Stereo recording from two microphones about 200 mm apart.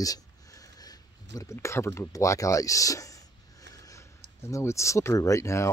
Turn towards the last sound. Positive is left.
turn(degrees=15)  # may be behind; listen again after turning